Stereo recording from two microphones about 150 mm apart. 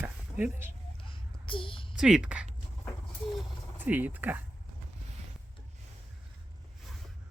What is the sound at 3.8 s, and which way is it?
Speech, 10° right (ahead or behind).